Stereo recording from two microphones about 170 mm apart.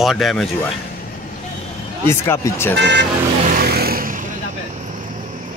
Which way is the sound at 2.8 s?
90° right.